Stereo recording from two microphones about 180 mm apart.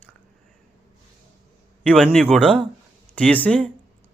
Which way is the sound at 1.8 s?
5° left (ahead or behind).